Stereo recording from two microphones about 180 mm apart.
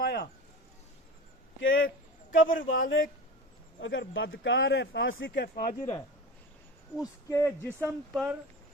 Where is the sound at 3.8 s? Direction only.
90° left; by 5.9 s 50° left (ahead or behind).